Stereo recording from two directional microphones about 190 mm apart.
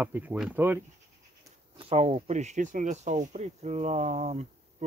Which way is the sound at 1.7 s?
30° right (ahead or behind).